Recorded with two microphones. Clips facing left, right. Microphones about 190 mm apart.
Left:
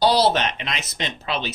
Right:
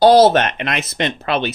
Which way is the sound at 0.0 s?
50° right (ahead or behind).